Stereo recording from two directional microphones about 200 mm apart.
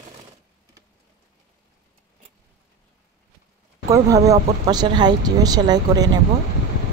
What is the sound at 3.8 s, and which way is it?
Speech, 15° right (ahead or behind).